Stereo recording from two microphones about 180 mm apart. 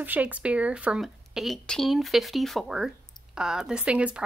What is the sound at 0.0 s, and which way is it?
Speech, 10° right (ahead or behind).